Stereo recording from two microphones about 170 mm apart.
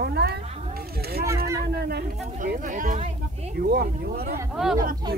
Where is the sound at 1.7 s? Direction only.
65° right (ahead or behind).